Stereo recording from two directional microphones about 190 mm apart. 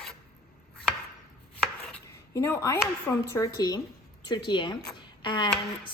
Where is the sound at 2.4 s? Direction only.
15° left (ahead or behind).